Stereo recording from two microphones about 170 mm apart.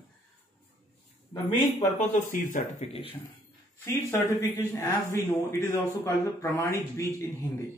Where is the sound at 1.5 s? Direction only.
45° left (ahead or behind).